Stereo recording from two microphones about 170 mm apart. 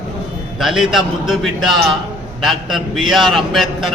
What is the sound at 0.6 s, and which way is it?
A man's voice, centre (ahead or behind).